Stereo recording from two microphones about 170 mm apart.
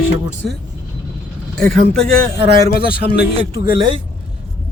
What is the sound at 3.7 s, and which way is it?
Speech, 30° right (ahead or behind).